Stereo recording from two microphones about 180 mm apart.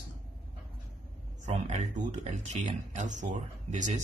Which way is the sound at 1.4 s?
40° right (ahead or behind).